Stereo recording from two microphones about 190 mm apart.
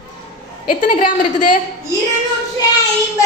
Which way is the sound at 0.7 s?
45° left (ahead or behind).